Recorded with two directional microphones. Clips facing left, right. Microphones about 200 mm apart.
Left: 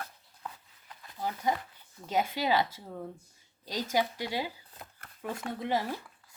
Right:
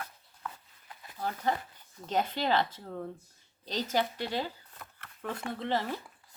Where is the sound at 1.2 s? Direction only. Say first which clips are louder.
Even; 10° left (ahead or behind).